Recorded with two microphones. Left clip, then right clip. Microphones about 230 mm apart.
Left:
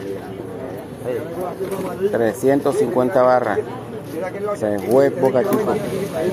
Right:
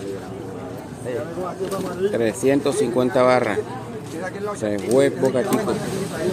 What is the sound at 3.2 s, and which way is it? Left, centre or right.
Speech, right.